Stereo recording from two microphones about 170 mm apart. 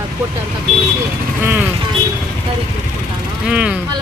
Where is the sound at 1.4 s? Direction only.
10° right (ahead or behind).